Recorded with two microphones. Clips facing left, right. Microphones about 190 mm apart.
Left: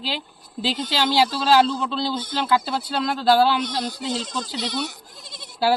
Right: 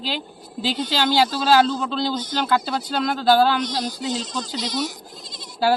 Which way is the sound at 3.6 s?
60° left (ahead or behind).